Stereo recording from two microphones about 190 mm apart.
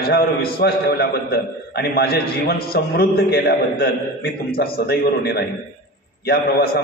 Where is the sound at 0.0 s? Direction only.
55° left (ahead or behind).